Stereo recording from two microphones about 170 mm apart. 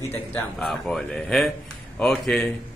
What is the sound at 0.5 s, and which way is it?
A man's voice, centre (ahead or behind).